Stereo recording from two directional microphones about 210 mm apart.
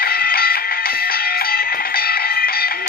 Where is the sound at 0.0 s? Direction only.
45° left (ahead or behind).